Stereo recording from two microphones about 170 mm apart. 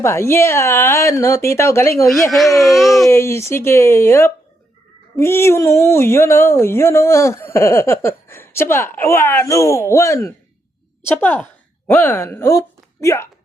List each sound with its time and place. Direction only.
0.0 s speech: 15° left (ahead or behind)
2.3 s speech: centre (ahead or behind)
3.1 s speech: 15° left (ahead or behind)